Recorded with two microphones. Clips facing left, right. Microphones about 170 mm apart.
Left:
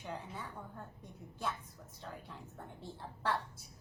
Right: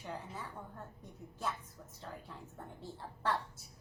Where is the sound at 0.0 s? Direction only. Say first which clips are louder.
Even; centre (ahead or behind).